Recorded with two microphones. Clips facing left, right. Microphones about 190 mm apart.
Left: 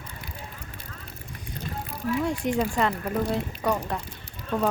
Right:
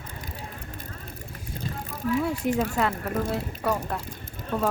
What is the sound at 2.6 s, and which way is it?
Speech, 5° right (ahead or behind).